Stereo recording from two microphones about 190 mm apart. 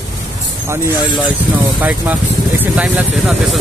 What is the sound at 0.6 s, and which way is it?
Speech, 15° right (ahead or behind).